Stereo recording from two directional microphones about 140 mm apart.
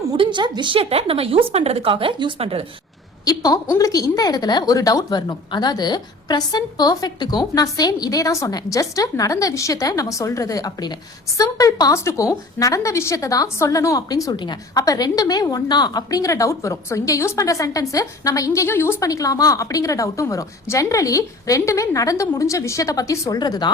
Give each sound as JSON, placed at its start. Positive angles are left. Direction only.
{"t": 0.2, "sound": "speech", "side_deg": -35}
{"t": 3.2, "sound": "a woman's voice", "side_deg": 25}